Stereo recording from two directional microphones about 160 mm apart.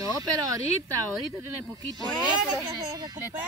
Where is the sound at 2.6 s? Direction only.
25° right (ahead or behind).